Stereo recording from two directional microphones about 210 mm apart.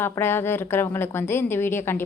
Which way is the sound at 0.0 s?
10° left (ahead or behind).